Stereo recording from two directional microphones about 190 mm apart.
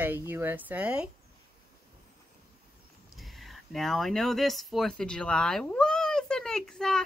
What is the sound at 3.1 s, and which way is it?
Speech, centre (ahead or behind).